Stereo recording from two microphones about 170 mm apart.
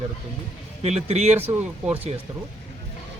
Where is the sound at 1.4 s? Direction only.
10° right (ahead or behind).